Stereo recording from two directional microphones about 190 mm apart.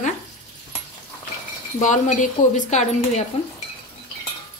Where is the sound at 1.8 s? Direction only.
40° left (ahead or behind).